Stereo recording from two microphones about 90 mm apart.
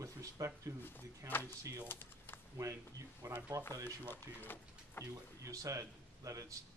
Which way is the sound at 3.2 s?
25° right (ahead or behind).